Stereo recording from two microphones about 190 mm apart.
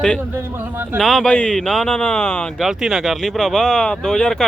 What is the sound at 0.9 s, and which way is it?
Speech, centre (ahead or behind).